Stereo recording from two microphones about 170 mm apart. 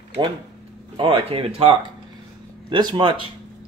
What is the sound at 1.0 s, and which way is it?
Speech, 30° right (ahead or behind).